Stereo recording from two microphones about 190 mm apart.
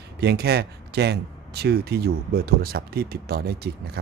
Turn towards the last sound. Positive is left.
turn(degrees=-55)  # may be behind; listen again after turning